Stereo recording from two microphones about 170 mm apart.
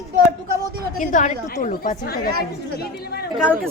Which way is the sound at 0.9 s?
50° left (ahead or behind).